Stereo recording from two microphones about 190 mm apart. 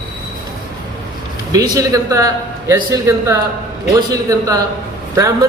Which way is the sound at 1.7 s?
15° right (ahead or behind).